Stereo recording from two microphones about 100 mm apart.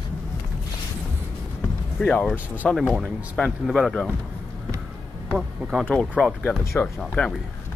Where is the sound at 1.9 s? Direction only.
10° left (ahead or behind).